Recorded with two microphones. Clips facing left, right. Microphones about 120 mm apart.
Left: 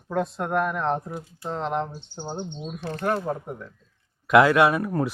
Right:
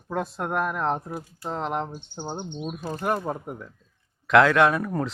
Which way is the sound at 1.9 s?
15° right (ahead or behind).